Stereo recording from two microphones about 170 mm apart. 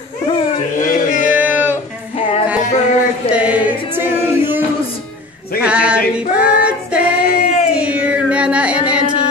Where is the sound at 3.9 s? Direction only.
15° right (ahead or behind).